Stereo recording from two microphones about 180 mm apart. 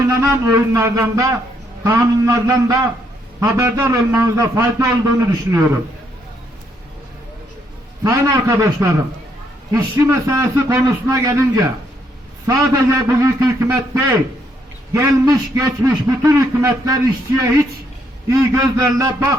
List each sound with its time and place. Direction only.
0.1 s a man's voice: 15° right (ahead or behind)
8.0 s a man's voice: 20° right (ahead or behind)